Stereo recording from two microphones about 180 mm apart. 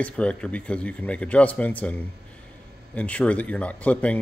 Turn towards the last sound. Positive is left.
turn(degrees=10)  # may be behind; listen again after turning